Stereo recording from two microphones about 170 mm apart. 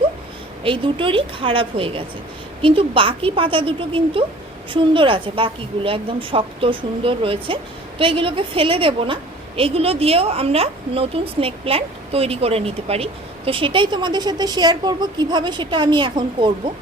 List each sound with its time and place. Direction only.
0.6 s a woman's voice: 30° right (ahead or behind)